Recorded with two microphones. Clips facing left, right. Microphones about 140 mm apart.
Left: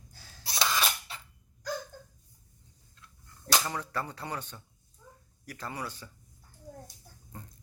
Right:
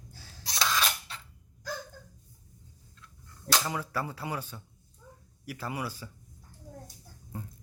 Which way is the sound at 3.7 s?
10° right (ahead or behind).